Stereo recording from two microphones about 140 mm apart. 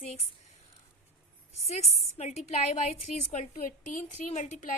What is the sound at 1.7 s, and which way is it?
A woman's voice, 50° left (ahead or behind).